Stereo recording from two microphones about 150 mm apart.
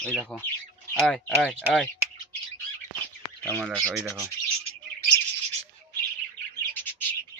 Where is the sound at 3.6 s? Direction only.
5° left (ahead or behind).